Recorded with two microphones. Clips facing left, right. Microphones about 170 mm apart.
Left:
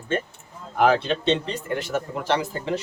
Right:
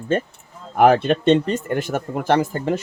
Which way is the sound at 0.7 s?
55° right (ahead or behind).